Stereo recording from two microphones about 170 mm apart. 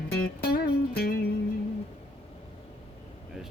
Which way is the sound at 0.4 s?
70° left (ahead or behind).